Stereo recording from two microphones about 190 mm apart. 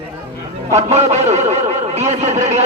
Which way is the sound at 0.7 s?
35° right (ahead or behind).